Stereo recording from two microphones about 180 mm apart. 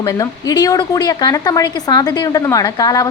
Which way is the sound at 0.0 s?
20° left (ahead or behind).